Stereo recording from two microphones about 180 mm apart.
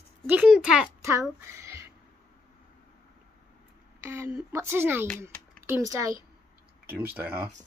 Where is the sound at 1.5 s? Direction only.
15° right (ahead or behind).